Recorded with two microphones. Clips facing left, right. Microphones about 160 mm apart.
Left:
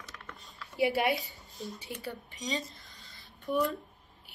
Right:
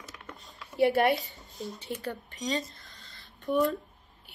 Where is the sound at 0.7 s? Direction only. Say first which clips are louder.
Right 4 dB; centre (ahead or behind).